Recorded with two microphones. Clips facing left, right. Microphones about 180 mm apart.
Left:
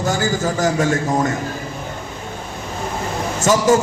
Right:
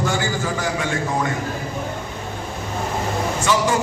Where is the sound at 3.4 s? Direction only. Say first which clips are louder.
Left 6 dB; 45° left (ahead or behind).